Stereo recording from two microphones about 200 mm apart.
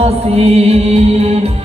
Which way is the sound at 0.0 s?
30° right (ahead or behind).